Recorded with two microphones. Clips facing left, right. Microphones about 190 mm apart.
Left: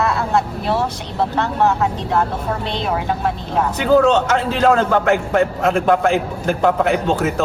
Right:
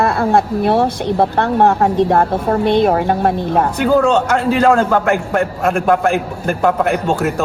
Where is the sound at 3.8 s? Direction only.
10° right (ahead or behind).